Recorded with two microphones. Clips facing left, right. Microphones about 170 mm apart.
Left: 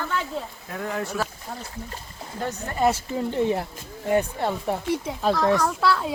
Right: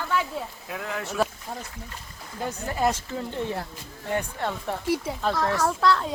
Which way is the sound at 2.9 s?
15° left (ahead or behind).